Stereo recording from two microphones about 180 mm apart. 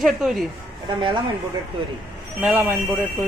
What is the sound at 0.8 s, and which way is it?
Speech, 25° right (ahead or behind).